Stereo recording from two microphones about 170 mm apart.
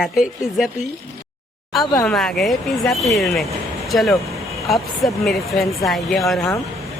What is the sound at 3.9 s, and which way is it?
Vehicle, centre (ahead or behind).